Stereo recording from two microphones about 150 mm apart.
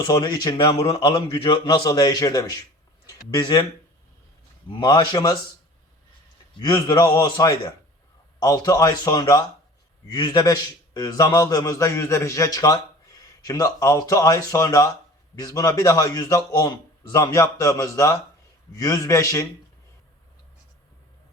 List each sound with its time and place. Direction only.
0.0 s speech: 30° left (ahead or behind)
0.9 s a man's voice: 25° left (ahead or behind)
4.7 s a man's voice: 30° left (ahead or behind)
6.6 s a man's voice: 25° left (ahead or behind)